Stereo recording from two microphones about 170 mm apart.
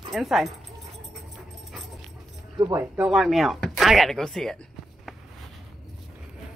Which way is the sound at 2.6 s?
20° right (ahead or behind).